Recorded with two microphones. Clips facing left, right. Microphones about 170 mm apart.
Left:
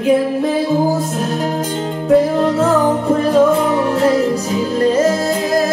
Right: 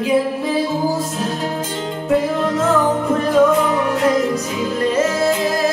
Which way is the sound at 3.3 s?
30° left (ahead or behind).